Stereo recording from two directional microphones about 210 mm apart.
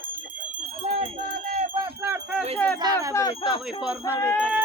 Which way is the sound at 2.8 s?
20° right (ahead or behind).